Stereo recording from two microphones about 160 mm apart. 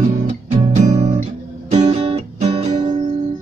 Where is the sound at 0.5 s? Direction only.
40° right (ahead or behind).